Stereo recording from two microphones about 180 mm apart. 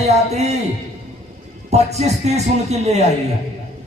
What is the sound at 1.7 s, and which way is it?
A man's voice, 35° right (ahead or behind).